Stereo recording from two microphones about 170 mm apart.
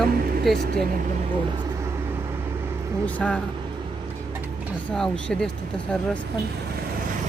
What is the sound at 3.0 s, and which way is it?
Speech, 5° left (ahead or behind).